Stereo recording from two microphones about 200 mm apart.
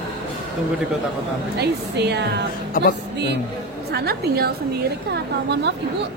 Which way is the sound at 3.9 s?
55° right (ahead or behind).